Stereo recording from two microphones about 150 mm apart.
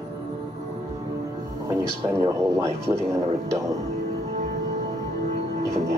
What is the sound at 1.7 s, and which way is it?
Speech, 20° right (ahead or behind).